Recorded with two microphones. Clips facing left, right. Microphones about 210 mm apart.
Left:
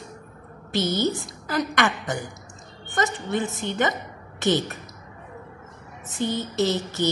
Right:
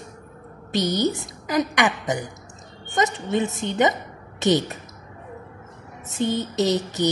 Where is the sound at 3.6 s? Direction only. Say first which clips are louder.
Right 4 dB; 20° right (ahead or behind).